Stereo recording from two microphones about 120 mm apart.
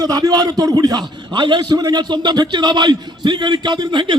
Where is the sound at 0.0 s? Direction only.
30° right (ahead or behind).